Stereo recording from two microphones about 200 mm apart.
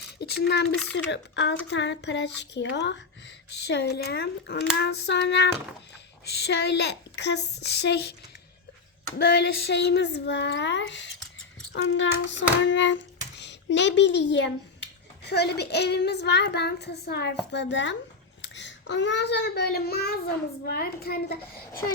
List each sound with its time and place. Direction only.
0.2 s speech: 55° left (ahead or behind)
9.1 s a child's voice: 50° left (ahead or behind)